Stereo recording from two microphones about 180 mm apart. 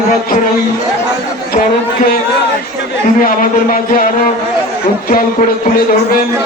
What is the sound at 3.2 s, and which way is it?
Speech, 50° left (ahead or behind).